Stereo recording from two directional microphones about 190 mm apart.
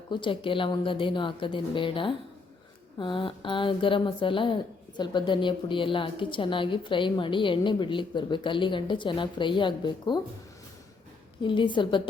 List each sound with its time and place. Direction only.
0.1 s a woman's voice: 25° left (ahead or behind)
11.4 s a woman's voice: 25° left (ahead or behind)